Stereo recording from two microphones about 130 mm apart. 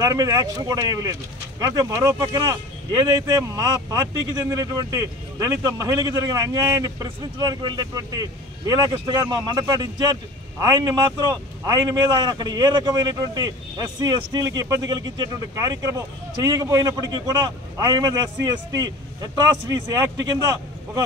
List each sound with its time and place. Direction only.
0.0 s speech: 30° right (ahead or behind)
11.6 s a man's voice: 30° right (ahead or behind)